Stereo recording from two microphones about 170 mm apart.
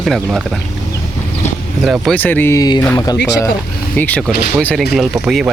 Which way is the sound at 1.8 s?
Centre (ahead or behind).